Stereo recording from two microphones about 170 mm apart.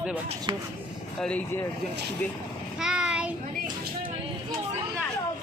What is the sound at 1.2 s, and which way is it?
Speech, 5° left (ahead or behind).